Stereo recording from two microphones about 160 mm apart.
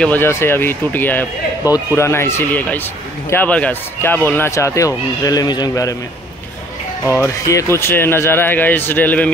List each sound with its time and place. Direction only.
0.0 s a man's voice: 10° left (ahead or behind)
7.2 s speech: 20° left (ahead or behind)